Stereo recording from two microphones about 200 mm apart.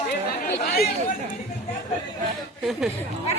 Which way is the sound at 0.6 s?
50° left (ahead or behind).